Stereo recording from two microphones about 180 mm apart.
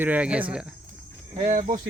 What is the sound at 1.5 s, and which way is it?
Speech, 45° right (ahead or behind).